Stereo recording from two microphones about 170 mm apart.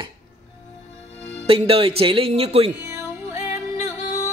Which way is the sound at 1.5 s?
30° right (ahead or behind).